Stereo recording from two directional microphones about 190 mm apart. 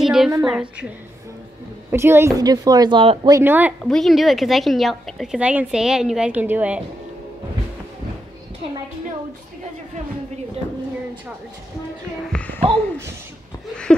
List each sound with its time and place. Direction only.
0.0 s a sound: centre (ahead or behind)
0.3 s a woman's voice: 15° right (ahead or behind)
0.6 s a woman's voice: 5° right (ahead or behind); by 3.3 s 25° right (ahead or behind)
3.3 s a woman's voice: 10° right (ahead or behind)
3.8 s a woman's voice: centre (ahead or behind)
12.3 s a child's voice: 5° left (ahead or behind)